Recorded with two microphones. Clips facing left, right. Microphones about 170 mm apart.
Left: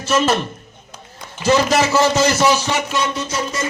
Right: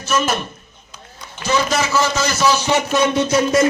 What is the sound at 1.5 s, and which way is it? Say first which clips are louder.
A man's voice: left 4 dB; 35° left (ahead or behind).